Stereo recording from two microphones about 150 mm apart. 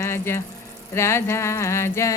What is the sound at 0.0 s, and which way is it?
Speech, 15° left (ahead or behind).